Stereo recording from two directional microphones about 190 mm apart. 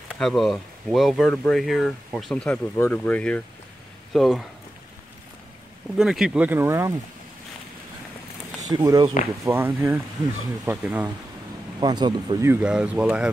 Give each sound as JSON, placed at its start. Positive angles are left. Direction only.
{"t": 0.1, "sound": "speech", "side_deg": 0}
{"t": 5.9, "sound": "speech", "side_deg": -5}
{"t": 8.5, "sound": "speech", "side_deg": -20}
{"t": 11.8, "sound": "speech", "side_deg": -25}
{"t": 12.6, "sound": "speech", "side_deg": -5}